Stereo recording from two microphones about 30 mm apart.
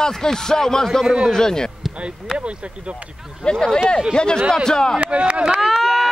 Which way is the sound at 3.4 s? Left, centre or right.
Left.